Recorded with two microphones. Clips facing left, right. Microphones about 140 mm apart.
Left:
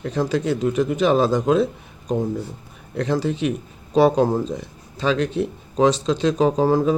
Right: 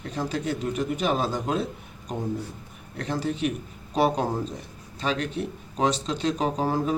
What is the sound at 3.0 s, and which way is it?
A man's voice, 90° left.